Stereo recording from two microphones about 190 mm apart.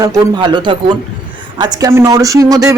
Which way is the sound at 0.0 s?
25° right (ahead or behind).